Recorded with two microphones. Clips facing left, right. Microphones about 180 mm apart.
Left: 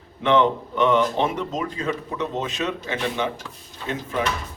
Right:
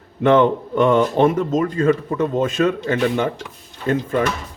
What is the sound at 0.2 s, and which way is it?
Speech, 50° right (ahead or behind).